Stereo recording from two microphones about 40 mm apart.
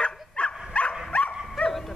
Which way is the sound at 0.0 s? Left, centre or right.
Left.